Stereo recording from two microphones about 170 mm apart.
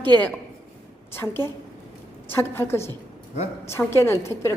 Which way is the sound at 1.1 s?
15° left (ahead or behind).